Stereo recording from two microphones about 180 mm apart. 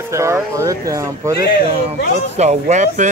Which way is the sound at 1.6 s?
35° right (ahead or behind).